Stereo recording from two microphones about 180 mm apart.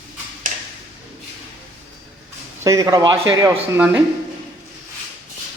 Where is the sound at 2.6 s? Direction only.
20° right (ahead or behind).